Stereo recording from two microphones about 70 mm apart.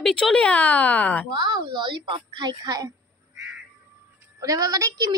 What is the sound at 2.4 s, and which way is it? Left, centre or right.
Speech, right.